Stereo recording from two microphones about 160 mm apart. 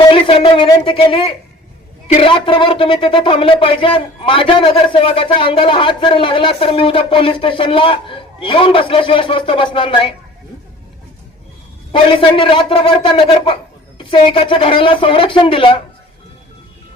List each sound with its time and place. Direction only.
0.1 s speech: 35° left (ahead or behind)
12.4 s speech: 30° left (ahead or behind)